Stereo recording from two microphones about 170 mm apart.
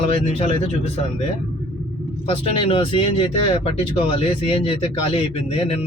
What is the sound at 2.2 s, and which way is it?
Speech, 30° left (ahead or behind).